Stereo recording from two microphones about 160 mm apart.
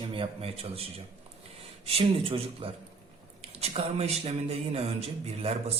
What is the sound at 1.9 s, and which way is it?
A man's voice, 35° right (ahead or behind).